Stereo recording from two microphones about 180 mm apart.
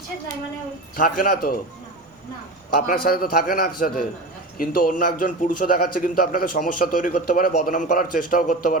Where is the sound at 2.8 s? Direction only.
55° left (ahead or behind).